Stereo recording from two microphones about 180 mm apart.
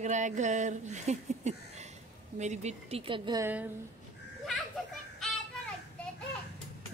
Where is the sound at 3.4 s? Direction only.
10° right (ahead or behind).